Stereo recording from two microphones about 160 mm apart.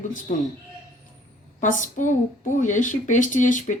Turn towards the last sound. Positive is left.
turn(degrees=55)  # may be behind; listen again after turning